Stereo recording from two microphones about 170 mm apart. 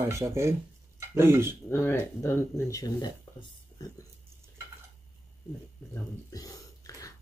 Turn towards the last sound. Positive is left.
turn(degrees=20)  # may be behind; listen again after turning